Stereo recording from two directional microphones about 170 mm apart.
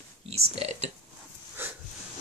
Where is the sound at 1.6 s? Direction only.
10° right (ahead or behind).